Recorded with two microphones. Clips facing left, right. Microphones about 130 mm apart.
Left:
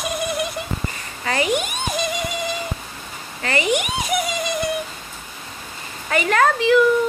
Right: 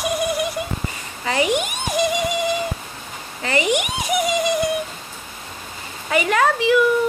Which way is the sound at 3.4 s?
15° right (ahead or behind).